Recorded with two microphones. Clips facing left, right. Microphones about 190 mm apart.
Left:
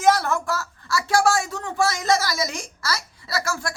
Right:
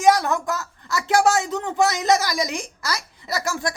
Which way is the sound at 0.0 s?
15° right (ahead or behind).